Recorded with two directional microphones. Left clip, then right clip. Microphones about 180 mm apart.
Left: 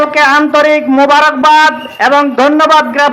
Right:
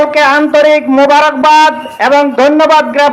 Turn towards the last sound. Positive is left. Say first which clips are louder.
# even
turn(degrees=15)  # may be behind; listen again after turning